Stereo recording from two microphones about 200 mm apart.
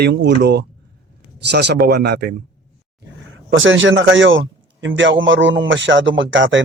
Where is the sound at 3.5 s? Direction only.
70° right (ahead or behind).